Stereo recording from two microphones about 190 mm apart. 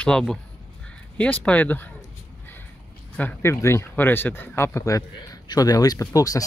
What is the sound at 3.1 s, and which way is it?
Speech, 10° left (ahead or behind).